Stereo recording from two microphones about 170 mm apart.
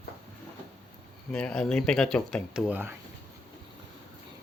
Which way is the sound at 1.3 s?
5° left (ahead or behind).